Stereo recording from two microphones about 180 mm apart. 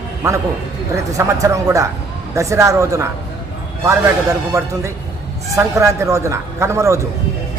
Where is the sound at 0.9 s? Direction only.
15° right (ahead or behind).